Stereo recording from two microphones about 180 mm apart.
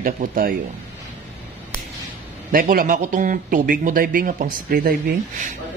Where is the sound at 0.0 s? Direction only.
50° right (ahead or behind).